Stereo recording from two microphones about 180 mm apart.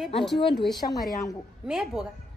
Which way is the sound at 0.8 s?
45° left (ahead or behind).